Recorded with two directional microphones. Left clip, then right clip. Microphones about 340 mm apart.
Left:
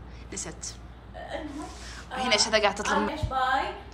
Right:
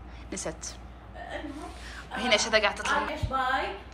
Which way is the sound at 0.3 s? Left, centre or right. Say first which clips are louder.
Right 2 dB; centre.